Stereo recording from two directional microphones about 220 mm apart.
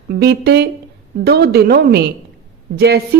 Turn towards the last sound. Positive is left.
turn(degrees=-50)  # may be behind; listen again after turning